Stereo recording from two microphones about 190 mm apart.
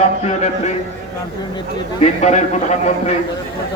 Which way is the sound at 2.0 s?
35° left (ahead or behind).